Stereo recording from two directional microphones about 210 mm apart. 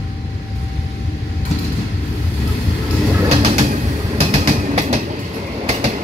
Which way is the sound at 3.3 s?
30° right (ahead or behind).